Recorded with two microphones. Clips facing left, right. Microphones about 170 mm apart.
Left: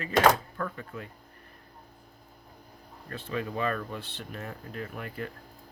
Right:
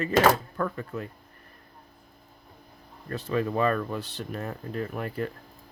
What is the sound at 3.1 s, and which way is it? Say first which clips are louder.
Speech: right 6 dB; 40° right (ahead or behind).